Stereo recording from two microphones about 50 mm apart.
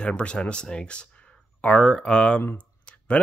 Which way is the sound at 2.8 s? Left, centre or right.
Left.